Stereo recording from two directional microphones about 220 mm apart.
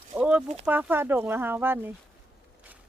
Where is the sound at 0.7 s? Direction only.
10° right (ahead or behind).